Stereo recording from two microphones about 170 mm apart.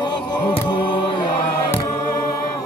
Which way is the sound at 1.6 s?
20° left (ahead or behind).